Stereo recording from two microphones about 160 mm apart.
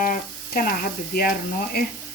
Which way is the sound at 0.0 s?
65° left (ahead or behind).